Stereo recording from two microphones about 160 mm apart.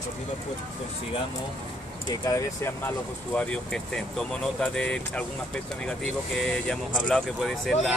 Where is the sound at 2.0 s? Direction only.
15° left (ahead or behind).